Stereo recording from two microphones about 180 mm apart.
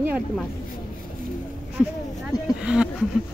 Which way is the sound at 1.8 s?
5° right (ahead or behind).